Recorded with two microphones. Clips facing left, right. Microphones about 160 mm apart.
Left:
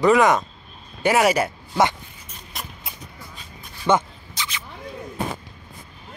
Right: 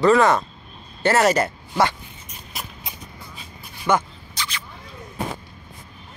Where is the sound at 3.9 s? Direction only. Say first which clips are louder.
Left 1 dB; 20° left (ahead or behind).